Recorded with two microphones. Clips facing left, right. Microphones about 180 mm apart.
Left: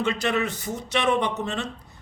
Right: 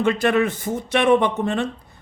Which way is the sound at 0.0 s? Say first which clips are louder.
Right 6 dB; 50° right (ahead or behind).